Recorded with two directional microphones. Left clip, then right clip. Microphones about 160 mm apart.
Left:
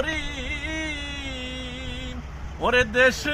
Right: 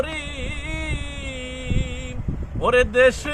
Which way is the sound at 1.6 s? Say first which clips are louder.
Right 3 dB; 25° right (ahead or behind).